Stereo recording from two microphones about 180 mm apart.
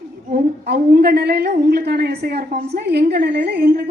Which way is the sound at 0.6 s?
60° right (ahead or behind).